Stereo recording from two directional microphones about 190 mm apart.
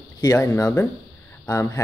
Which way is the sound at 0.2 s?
15° left (ahead or behind).